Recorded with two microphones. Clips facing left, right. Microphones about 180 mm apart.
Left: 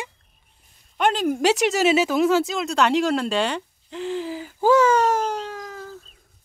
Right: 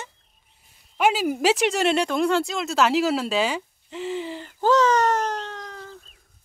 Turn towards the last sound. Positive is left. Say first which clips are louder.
# left 3 dB
turn(degrees=5)  # may be behind; listen again after turning